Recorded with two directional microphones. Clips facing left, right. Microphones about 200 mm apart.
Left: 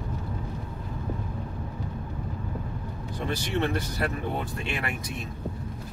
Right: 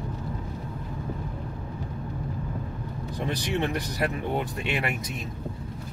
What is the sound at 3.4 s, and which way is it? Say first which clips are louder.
Speech: left 1 dB; 15° right (ahead or behind).